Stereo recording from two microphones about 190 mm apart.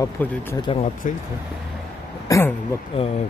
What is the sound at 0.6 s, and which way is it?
Speech, 30° left (ahead or behind).